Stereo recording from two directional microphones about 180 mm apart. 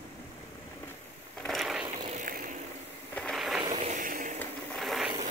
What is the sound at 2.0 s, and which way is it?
Vehicle, 45° right (ahead or behind).